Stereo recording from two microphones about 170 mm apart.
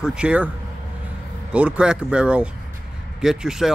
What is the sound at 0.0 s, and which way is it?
Speech, 5° right (ahead or behind).